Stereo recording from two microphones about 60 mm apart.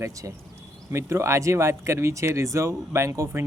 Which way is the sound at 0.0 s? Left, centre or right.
Right.